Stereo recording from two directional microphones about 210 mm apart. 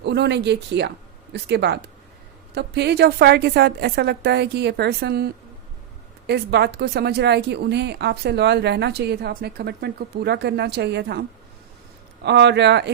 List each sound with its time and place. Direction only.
0.0 s speech: 55° right (ahead or behind)